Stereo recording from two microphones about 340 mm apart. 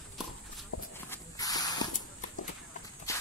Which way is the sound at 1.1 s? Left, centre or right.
Centre.